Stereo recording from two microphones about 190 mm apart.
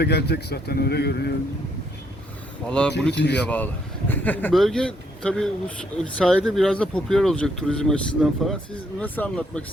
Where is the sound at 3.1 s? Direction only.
65° left (ahead or behind).